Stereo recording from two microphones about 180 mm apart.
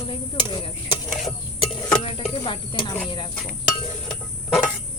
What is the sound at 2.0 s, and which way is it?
Cricket, 35° left (ahead or behind).